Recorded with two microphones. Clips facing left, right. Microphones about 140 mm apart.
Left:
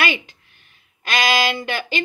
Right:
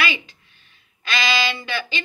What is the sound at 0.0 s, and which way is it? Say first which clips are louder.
Speech: left 3 dB; 50° left (ahead or behind).